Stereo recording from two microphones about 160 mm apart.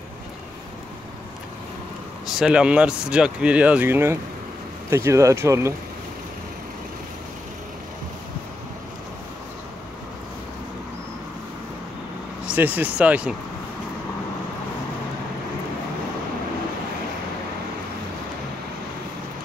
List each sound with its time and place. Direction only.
2.2 s speech: 5° right (ahead or behind)
12.4 s speech: 10° right (ahead or behind)